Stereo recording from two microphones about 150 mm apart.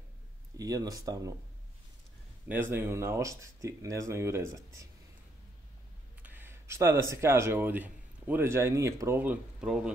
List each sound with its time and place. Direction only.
0.6 s speech: 25° right (ahead or behind)
2.4 s speech: 15° right (ahead or behind)
6.2 s speech: 15° right (ahead or behind)